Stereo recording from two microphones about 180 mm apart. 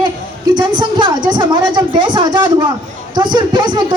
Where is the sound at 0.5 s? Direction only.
25° right (ahead or behind).